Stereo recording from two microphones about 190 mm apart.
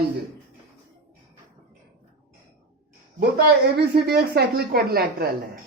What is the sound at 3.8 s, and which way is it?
A woman's voice, 55° right (ahead or behind).